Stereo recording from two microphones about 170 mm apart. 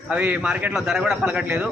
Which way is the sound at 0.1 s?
10° right (ahead or behind).